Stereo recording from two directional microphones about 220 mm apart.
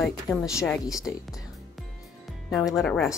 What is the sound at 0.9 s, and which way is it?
Music, centre (ahead or behind).